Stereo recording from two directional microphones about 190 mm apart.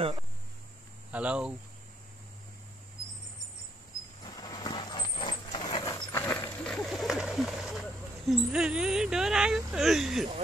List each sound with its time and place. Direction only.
1.1 s speech: 5° right (ahead or behind)
4.2 s vehicle: 20° left (ahead or behind); by 7.8 s centre (ahead or behind)
8.3 s speech: 5° right (ahead or behind)